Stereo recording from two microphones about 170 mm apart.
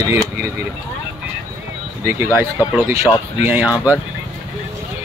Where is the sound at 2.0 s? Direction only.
15° right (ahead or behind).